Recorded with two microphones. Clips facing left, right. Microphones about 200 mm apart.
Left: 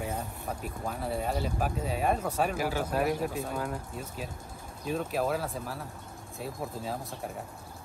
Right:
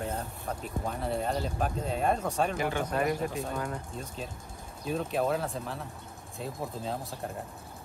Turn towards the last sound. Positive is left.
turn(degrees=5)  # may be behind; listen again after turning